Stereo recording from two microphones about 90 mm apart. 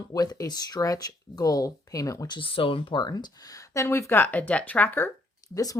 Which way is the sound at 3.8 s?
30° left (ahead or behind).